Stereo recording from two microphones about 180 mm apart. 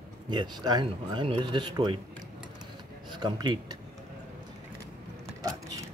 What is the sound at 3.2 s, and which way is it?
Speech, 25° right (ahead or behind).